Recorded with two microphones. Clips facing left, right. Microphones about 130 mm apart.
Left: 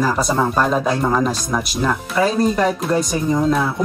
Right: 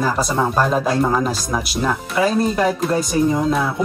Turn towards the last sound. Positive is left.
turn(degrees=0)  # may be behind; listen again after turning